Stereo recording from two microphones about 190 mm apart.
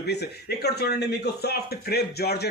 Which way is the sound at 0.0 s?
60° left (ahead or behind).